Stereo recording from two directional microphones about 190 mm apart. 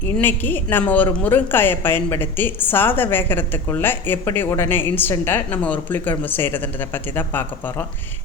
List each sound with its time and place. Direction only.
0.2 s a woman's voice: 10° left (ahead or behind)